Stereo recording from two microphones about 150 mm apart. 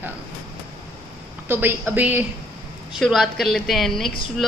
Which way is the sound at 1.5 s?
15° right (ahead or behind).